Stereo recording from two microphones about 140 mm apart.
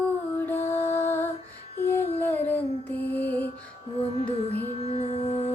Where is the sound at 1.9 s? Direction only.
15° left (ahead or behind).